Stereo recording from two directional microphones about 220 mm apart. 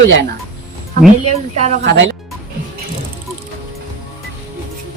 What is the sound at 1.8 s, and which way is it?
Speech, 55° right (ahead or behind).